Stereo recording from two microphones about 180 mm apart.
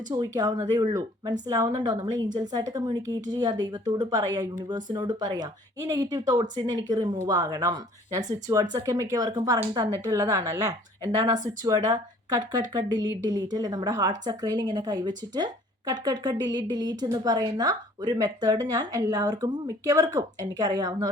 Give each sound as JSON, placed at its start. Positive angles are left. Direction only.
{"t": 0.1, "sound": "a woman's voice", "side_deg": -20}